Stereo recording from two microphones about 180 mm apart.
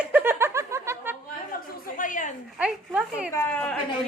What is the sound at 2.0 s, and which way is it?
Speech, 45° left (ahead or behind).